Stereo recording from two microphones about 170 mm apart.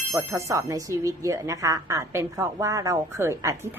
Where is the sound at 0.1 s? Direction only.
15° right (ahead or behind).